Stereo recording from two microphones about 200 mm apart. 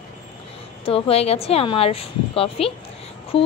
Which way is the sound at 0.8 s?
30° left (ahead or behind).